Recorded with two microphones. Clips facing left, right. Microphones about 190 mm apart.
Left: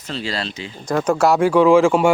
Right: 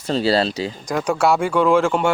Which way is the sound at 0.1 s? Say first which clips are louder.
Right 8 dB; 35° right (ahead or behind).